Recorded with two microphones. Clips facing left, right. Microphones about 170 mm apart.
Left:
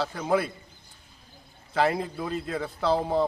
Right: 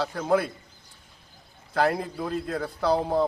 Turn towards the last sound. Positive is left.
turn(degrees=0)  # may be behind; listen again after turning